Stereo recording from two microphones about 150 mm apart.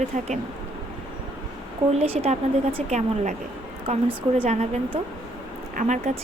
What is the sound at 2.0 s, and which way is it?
Speech, 40° right (ahead or behind).